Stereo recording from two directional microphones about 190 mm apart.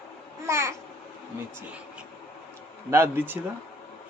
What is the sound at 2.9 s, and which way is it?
Speech, 10° right (ahead or behind).